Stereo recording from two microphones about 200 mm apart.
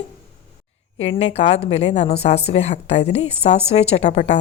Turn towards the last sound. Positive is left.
turn(degrees=35)  # may be behind; listen again after turning